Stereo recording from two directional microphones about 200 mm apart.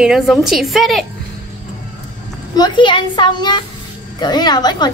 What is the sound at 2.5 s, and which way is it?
A child's voice, 20° left (ahead or behind).